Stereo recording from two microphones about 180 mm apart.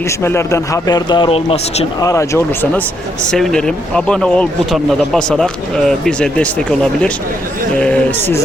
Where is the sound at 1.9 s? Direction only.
20° left (ahead or behind).